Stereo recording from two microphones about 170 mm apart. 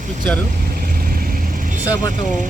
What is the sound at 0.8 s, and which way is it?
Vehicle, 60° right (ahead or behind).